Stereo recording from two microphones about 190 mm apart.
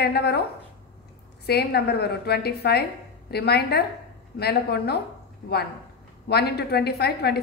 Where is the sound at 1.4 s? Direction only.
55° left (ahead or behind).